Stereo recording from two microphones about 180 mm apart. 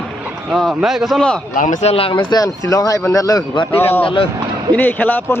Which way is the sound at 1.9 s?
30° left (ahead or behind).